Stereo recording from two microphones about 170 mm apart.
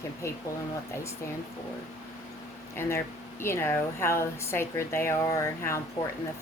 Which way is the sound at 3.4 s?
15° left (ahead or behind).